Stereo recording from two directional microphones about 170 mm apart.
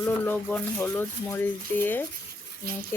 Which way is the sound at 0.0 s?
10° left (ahead or behind).